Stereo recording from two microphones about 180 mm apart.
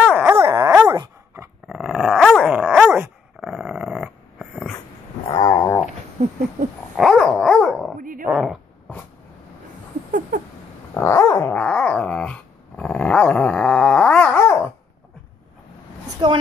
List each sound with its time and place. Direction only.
0.0 s dog: 5° right (ahead or behind)
0.8 s dog: 20° right (ahead or behind)
1.7 s dog: 5° right (ahead or behind)
5.3 s dog: 20° left (ahead or behind)
7.0 s dog: centre (ahead or behind)
8.0 s dog: 50° right (ahead or behind)
8.3 s a sound: centre (ahead or behind)
11.0 s dog: 15° left (ahead or behind)
16.2 s a sound: 25° right (ahead or behind)